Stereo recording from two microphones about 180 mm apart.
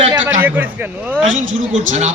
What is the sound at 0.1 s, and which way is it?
A man's voice, 10° right (ahead or behind).